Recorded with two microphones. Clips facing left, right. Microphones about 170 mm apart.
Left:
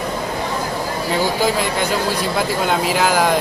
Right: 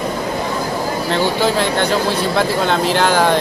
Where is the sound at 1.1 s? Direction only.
5° left (ahead or behind).